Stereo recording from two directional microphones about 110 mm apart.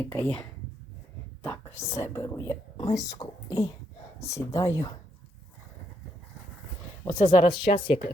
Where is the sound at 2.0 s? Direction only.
30° left (ahead or behind).